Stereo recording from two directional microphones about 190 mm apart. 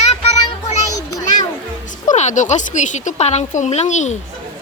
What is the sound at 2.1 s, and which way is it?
Speech, 40° left (ahead or behind).